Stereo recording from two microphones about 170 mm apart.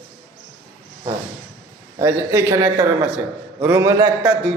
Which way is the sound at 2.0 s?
15° right (ahead or behind).